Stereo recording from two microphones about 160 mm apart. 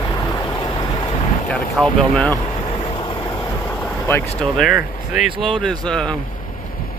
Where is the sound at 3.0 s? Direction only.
30° left (ahead or behind).